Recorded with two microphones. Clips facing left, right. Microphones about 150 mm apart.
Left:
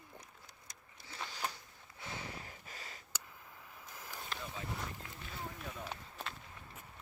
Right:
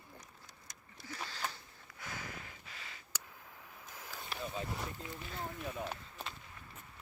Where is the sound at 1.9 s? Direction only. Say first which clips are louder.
Left 1 dB; 25° left (ahead or behind).